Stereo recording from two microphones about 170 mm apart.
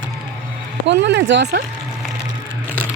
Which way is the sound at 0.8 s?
90° right.